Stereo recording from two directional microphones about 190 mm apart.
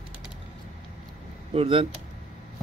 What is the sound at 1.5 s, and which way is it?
Speech, 30° right (ahead or behind).